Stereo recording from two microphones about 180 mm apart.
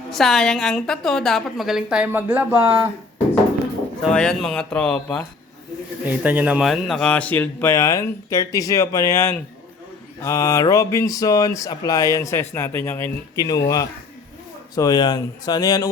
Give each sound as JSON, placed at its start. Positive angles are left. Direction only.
{"t": 0.1, "sound": "a woman's voice", "side_deg": 0}
{"t": 4.0, "sound": "a woman's voice", "side_deg": 5}
{"t": 6.1, "sound": "speech", "side_deg": -10}